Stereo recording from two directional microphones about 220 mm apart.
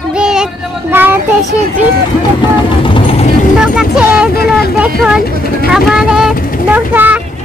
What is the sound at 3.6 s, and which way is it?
Speech, 5° right (ahead or behind).